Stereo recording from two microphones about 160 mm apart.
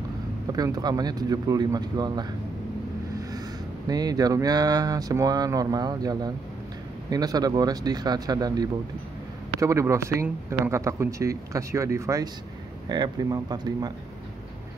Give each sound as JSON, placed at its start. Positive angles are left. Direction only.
{"t": 0.5, "sound": "speech", "side_deg": -25}